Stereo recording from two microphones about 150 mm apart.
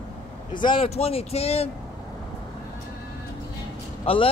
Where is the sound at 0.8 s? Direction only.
45° left (ahead or behind).